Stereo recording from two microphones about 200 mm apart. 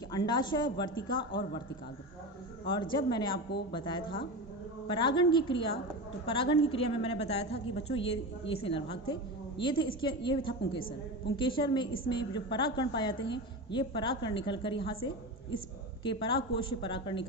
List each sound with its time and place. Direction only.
0.1 s a woman's voice: 20° left (ahead or behind)
2.7 s a woman's voice: 20° left (ahead or behind)